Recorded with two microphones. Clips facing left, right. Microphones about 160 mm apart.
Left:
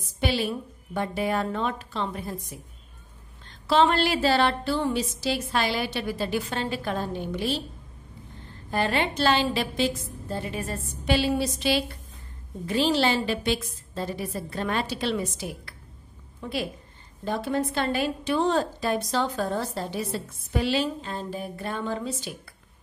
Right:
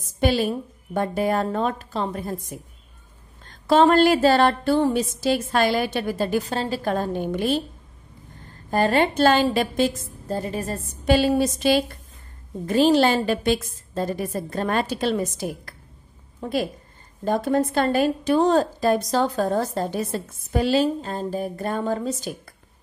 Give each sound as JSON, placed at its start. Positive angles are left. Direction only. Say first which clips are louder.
{"t": 0.2, "sound": "a woman's voice", "louder": "right 5 dB", "side_deg": -45}
{"t": 3.4, "sound": "a woman's voice", "louder": "right 5 dB", "side_deg": -45}
{"t": 8.6, "sound": "a woman's voice", "louder": "right 6 dB", "side_deg": -45}